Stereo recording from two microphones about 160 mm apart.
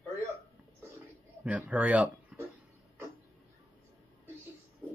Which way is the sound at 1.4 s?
10° right (ahead or behind).